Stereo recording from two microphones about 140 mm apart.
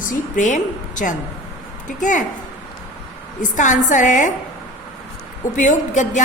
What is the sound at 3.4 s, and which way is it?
Speech, 65° left (ahead or behind).